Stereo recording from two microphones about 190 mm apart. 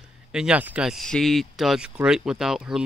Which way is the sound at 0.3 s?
5° right (ahead or behind).